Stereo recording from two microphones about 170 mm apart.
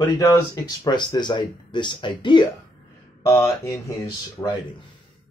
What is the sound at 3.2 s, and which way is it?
Speech, 15° left (ahead or behind).